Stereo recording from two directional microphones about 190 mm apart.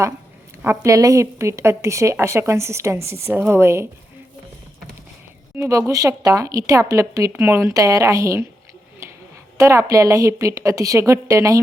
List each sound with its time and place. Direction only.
0.6 s speech: 15° right (ahead or behind)
5.5 s speech: 15° right (ahead or behind)
9.0 s a sound: 15° right (ahead or behind)
9.6 s a woman's voice: 15° right (ahead or behind)